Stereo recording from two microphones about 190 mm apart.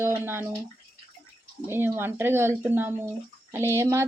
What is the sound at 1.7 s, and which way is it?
A woman's voice, 10° right (ahead or behind).